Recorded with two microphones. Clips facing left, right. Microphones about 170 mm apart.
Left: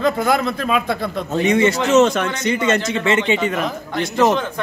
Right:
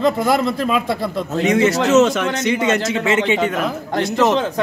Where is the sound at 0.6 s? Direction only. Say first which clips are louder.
Right 1 dB; 25° right (ahead or behind).